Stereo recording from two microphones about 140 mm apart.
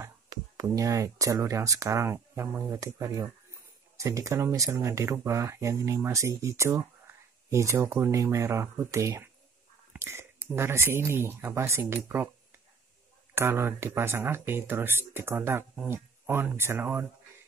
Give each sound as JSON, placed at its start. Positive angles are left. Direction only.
{"t": 0.0, "sound": "speech", "side_deg": -20}
{"t": 13.3, "sound": "speech", "side_deg": -15}